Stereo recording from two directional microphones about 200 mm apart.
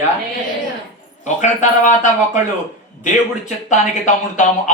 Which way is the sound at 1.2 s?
35° left (ahead or behind).